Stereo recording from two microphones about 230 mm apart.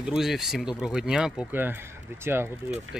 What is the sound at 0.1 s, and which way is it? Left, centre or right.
Speech, centre.